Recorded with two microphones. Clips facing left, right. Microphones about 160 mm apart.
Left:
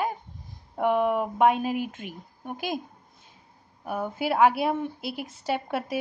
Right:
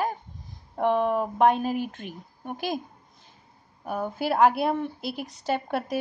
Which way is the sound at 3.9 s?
Centre (ahead or behind).